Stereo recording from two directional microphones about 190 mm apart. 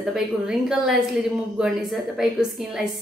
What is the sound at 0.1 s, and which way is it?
Speech, centre (ahead or behind).